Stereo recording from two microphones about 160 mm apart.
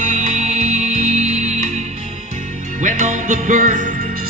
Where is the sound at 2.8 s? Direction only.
50° right (ahead or behind).